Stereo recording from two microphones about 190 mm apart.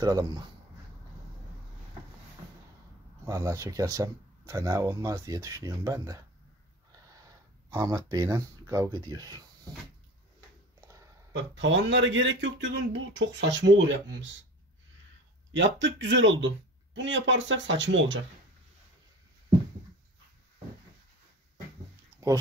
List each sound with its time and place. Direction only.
0.0 s speech: 20° right (ahead or behind)
3.3 s speech: 15° right (ahead or behind)
7.7 s speech: 20° right (ahead or behind)
11.3 s speech: 70° right (ahead or behind)
15.5 s speech: 70° right (ahead or behind)